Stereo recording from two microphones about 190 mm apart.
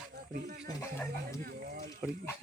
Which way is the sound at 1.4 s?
45° right (ahead or behind).